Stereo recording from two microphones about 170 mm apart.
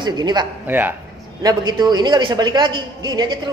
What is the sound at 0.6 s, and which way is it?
Speech, 10° right (ahead or behind).